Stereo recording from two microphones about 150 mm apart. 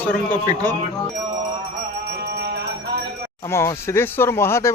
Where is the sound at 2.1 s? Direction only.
90° right.